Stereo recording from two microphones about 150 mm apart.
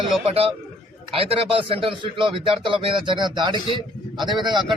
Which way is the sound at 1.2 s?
40° right (ahead or behind).